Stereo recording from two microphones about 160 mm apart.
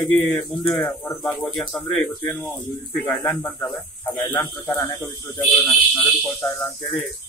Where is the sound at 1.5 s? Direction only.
5° left (ahead or behind).